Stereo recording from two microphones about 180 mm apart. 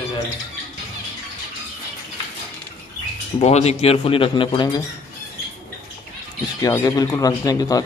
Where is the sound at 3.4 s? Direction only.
35° left (ahead or behind).